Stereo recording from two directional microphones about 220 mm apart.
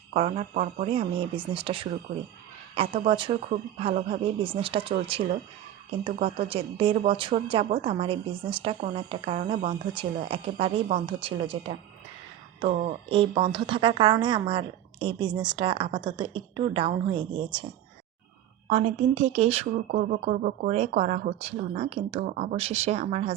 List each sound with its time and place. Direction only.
0.1 s speech: 30° right (ahead or behind)
6.4 s speech: 25° right (ahead or behind)
18.7 s speech: 30° right (ahead or behind)